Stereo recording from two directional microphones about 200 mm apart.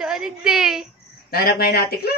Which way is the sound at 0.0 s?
5° right (ahead or behind).